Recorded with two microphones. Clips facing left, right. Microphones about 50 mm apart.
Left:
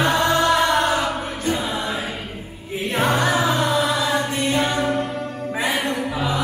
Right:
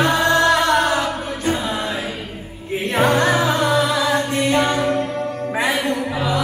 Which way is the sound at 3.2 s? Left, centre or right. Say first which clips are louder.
Right 2 dB; centre.